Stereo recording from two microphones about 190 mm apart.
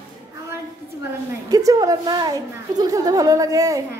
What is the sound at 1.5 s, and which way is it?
A woman's voice, 20° right (ahead or behind).